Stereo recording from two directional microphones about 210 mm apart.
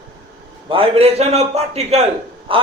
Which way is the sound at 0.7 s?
25° right (ahead or behind).